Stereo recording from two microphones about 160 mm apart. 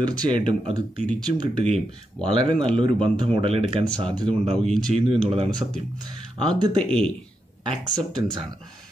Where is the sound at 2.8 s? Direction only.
30° right (ahead or behind).